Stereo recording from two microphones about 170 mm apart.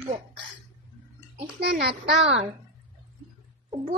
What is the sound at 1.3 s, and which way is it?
Speech, 65° right (ahead or behind).